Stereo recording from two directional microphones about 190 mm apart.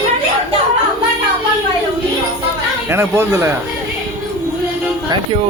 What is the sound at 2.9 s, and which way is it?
Speech, 15° right (ahead or behind).